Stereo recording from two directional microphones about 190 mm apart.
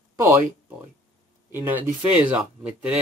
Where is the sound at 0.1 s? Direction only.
15° right (ahead or behind).